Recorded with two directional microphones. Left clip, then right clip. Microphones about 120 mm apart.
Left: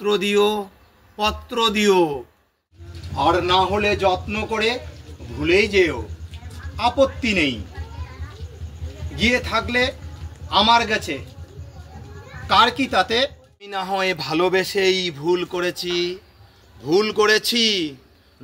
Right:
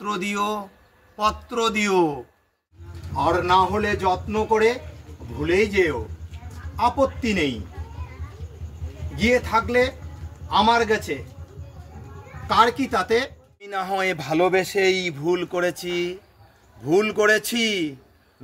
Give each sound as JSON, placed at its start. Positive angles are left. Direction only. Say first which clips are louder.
{"t": 0.0, "sound": "a man's voice", "louder": "left 7 dB", "side_deg": -50}
{"t": 3.3, "sound": "speech", "louder": "left 1 dB", "side_deg": -30}
{"t": 5.4, "sound": "speech", "louder": "left 3 dB", "side_deg": -25}
{"t": 9.1, "sound": "speech", "louder": "even", "side_deg": -25}
{"t": 12.4, "sound": "speech", "louder": "left 2 dB", "side_deg": -25}
{"t": 13.8, "sound": "a man's voice", "louder": "left 2 dB", "side_deg": -40}